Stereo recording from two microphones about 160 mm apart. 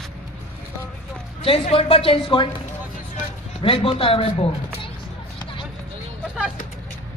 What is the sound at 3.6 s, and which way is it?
Speech, 35° left (ahead or behind).